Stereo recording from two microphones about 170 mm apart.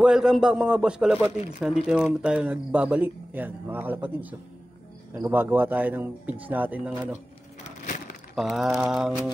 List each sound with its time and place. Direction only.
0.0 s a man's voice: 5° right (ahead or behind)
7.6 s wood: 45° left (ahead or behind)
8.4 s a man's voice: centre (ahead or behind)